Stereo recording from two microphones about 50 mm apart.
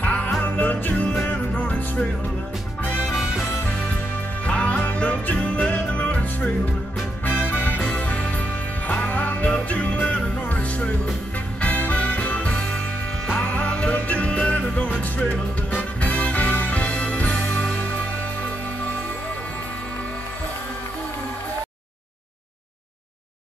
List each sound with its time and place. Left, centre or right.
0.0 s music: left
4.5 s music: left
7.2 s music: left
7.9 s music: left